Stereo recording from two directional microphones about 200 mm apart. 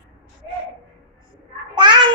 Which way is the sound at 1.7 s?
25° right (ahead or behind).